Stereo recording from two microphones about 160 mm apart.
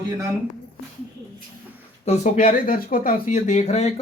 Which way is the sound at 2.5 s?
65° left (ahead or behind).